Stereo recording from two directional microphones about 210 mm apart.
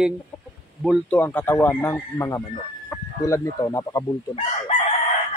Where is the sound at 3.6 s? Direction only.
15° left (ahead or behind).